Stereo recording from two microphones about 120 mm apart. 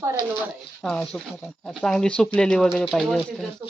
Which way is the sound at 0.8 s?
5° left (ahead or behind).